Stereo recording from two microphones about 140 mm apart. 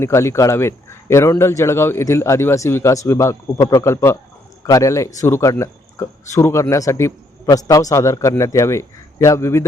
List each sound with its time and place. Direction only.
0.0 s a man's voice: 20° left (ahead or behind)